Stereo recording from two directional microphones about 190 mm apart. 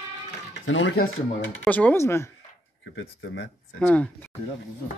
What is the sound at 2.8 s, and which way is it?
Speech, 80° left.